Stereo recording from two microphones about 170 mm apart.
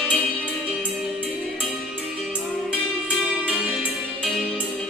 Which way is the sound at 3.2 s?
5° right (ahead or behind).